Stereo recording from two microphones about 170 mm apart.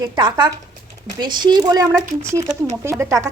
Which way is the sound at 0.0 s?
25° right (ahead or behind).